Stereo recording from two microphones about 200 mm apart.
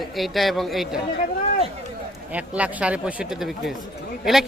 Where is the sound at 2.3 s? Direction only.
5° right (ahead or behind).